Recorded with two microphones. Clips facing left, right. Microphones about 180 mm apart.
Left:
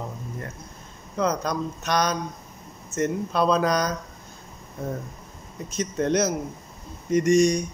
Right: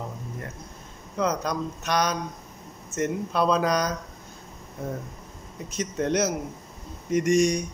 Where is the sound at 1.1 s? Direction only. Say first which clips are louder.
Left 1 dB; 10° right (ahead or behind).